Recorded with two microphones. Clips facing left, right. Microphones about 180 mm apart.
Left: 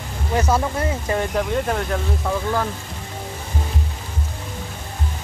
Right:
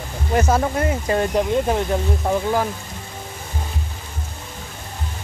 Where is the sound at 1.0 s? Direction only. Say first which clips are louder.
Right 4 dB; 15° right (ahead or behind).